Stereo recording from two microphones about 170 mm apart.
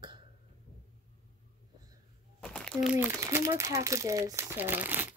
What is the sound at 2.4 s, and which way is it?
Speech, 5° left (ahead or behind).